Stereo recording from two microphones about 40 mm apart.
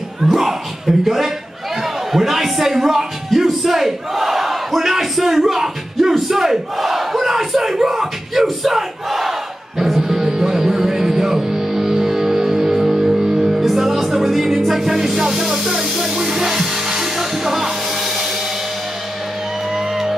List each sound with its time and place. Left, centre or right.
0.2 s a man's voice: centre
1.8 s a sound: centre
7.8 s crowd: centre
9.8 s music: centre
14.9 s music: centre
19.7 s music: centre